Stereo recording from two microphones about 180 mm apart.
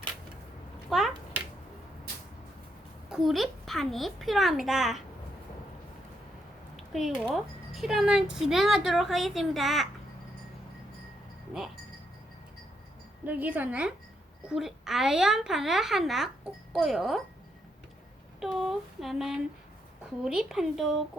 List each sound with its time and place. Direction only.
0.9 s a sound: centre (ahead or behind)
3.1 s speech: centre (ahead or behind)
6.7 s speech: centre (ahead or behind)
13.2 s speech: 10° right (ahead or behind)
18.3 s speech: centre (ahead or behind)